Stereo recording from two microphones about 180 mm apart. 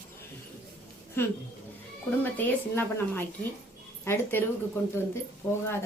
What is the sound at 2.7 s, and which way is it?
A woman's voice, 10° left (ahead or behind).